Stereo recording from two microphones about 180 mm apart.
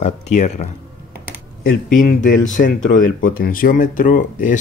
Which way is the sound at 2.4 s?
45° left (ahead or behind).